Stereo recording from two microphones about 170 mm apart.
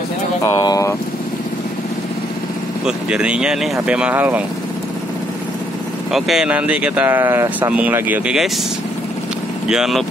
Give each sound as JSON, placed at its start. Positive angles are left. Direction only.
{"t": 0.4, "sound": "speech", "side_deg": 20}
{"t": 2.8, "sound": "speech", "side_deg": -5}
{"t": 6.1, "sound": "speech", "side_deg": 0}
{"t": 9.7, "sound": "speech", "side_deg": 0}